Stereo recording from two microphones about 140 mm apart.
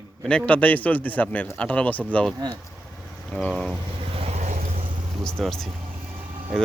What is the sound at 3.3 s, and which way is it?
Speech, 5° left (ahead or behind).